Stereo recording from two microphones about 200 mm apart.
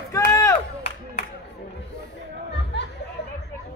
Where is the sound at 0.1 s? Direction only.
15° left (ahead or behind).